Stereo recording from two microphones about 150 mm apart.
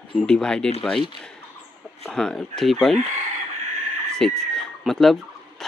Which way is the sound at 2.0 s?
5° left (ahead or behind).